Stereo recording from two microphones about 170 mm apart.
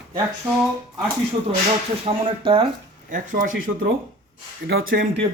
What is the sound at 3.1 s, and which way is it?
Speech, 50° right (ahead or behind).